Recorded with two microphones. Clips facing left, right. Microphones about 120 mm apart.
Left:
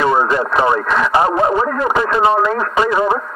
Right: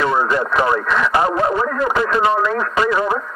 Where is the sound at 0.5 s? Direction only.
25° left (ahead or behind).